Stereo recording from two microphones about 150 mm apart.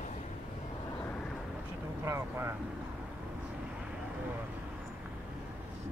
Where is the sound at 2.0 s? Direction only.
20° right (ahead or behind).